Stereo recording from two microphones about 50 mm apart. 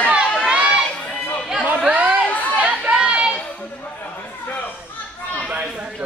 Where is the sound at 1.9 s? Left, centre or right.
Right.